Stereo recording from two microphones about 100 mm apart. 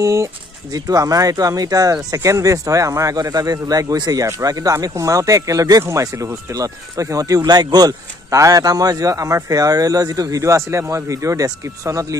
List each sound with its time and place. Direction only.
0.0 s speech: 30° right (ahead or behind)